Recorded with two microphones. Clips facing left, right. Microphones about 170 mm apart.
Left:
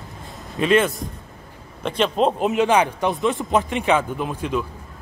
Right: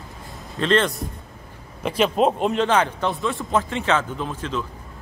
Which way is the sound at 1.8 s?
5° right (ahead or behind).